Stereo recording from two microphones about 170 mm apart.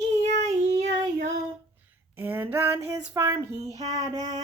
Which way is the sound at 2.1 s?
10° right (ahead or behind).